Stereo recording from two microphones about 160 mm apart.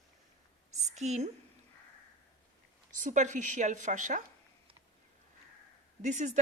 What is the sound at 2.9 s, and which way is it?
A woman's voice, 50° right (ahead or behind).